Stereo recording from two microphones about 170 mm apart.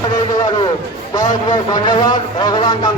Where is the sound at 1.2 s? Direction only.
25° left (ahead or behind).